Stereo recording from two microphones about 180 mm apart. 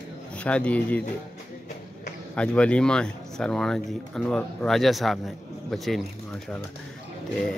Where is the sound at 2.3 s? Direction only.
5° left (ahead or behind).